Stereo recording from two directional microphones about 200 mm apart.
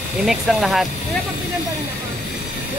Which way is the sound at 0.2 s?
Centre (ahead or behind).